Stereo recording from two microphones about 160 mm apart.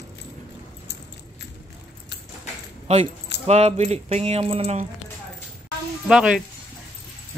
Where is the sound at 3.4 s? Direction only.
40° right (ahead or behind).